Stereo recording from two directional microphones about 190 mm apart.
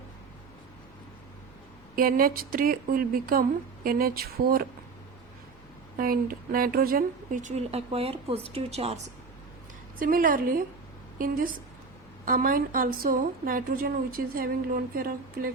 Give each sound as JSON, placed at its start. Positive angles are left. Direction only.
{"t": 2.0, "sound": "a woman's voice", "side_deg": -50}
{"t": 6.0, "sound": "a woman's voice", "side_deg": -50}
{"t": 10.0, "sound": "a woman's voice", "side_deg": -50}